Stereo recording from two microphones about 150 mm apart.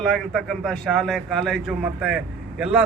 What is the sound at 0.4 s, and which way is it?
A man's voice, centre (ahead or behind).